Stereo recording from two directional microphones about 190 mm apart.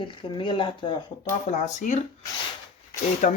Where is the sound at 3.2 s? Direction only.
40° left (ahead or behind).